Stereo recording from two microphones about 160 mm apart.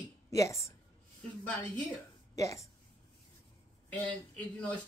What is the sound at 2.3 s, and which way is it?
Speech, 20° left (ahead or behind).